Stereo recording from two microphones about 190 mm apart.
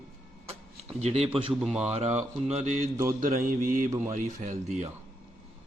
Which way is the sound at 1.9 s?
35° right (ahead or behind).